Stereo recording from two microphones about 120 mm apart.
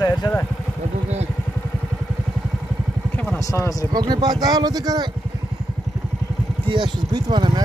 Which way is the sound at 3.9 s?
35° right (ahead or behind).